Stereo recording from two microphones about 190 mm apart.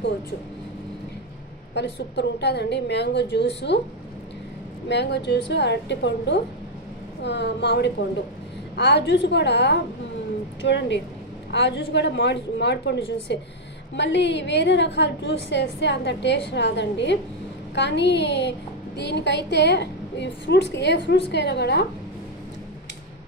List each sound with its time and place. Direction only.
1.7 s a woman's voice: 65° left (ahead or behind)
4.8 s a woman's voice: 65° left (ahead or behind)